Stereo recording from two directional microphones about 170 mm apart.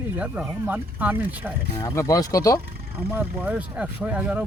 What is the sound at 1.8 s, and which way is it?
Speech, 20° left (ahead or behind).